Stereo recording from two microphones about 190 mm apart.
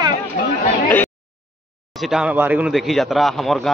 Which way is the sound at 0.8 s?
10° left (ahead or behind).